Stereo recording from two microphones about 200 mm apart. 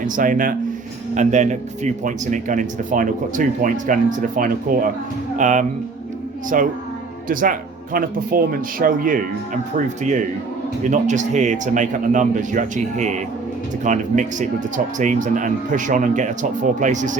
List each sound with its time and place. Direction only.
0.0 s speech: 40° right (ahead or behind)